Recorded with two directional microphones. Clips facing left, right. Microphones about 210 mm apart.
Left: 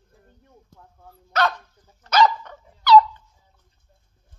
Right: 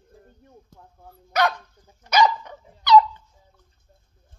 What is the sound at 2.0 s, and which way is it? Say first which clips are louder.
Dog: left 1 dB; 15° right (ahead or behind).